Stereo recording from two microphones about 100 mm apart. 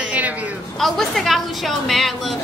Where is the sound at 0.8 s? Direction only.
Centre (ahead or behind).